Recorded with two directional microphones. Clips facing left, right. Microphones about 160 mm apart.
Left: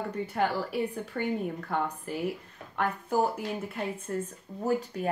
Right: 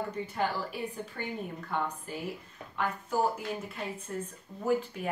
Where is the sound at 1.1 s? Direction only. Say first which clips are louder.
Left 9 dB; 60° left (ahead or behind).